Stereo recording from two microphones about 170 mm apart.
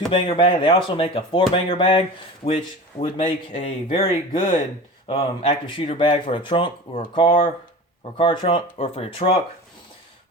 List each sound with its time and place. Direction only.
0.1 s speech: 30° left (ahead or behind)